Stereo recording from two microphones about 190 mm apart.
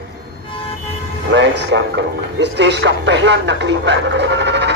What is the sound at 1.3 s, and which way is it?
Speech, 65° right (ahead or behind).